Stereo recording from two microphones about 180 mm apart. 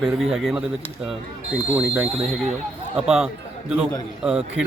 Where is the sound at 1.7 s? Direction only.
5° right (ahead or behind).